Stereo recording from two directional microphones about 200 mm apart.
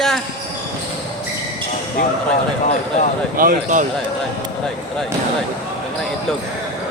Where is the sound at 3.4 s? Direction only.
45° right (ahead or behind).